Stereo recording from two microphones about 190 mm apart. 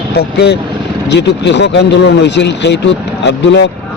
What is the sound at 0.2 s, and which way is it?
A man's voice, 60° left (ahead or behind).